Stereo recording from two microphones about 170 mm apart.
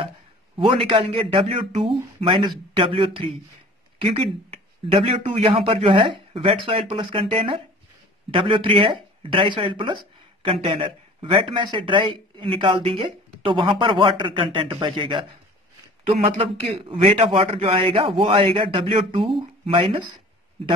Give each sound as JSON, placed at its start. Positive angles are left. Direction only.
{"t": 0.6, "sound": "speech", "side_deg": -30}